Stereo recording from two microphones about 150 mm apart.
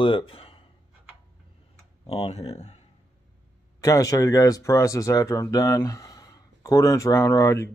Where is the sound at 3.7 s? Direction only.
25° left (ahead or behind).